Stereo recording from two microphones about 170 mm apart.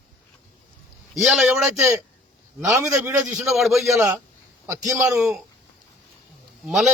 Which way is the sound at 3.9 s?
15° right (ahead or behind).